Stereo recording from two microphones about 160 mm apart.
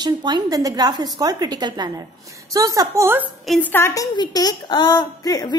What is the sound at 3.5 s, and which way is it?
A woman's voice, 10° left (ahead or behind).